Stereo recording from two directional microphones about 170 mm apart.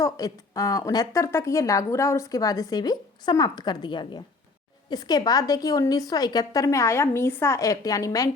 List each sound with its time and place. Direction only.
0.0 s a woman's voice: 20° left (ahead or behind)